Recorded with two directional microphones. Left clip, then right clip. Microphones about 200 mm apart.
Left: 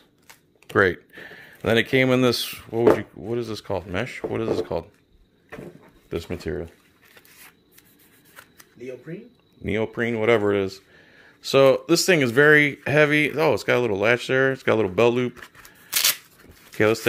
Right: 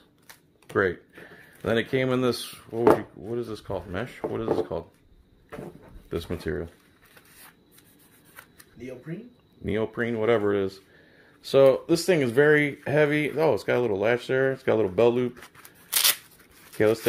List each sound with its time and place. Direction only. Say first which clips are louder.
0.7 s speech: left 5 dB; 35° left (ahead or behind)
6.0 s speech: left 2 dB; 20° left (ahead or behind)
9.6 s speech: left 3 dB; 25° left (ahead or behind)
15.4 s shuffling cards: left 4 dB; 5° right (ahead or behind)
16.7 s speech: left 2 dB; 25° left (ahead or behind)